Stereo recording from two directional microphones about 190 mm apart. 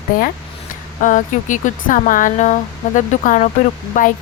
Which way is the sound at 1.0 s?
40° left (ahead or behind).